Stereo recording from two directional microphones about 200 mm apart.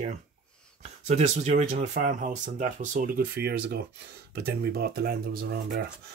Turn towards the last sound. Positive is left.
turn(degrees=-50)  # may be behind; listen again after turning